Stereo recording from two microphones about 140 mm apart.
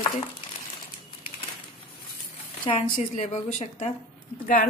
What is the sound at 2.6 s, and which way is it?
A woman's voice, 60° left (ahead or behind).